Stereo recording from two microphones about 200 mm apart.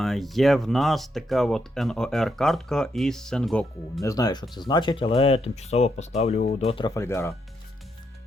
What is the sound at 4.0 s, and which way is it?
Speech, 15° left (ahead or behind).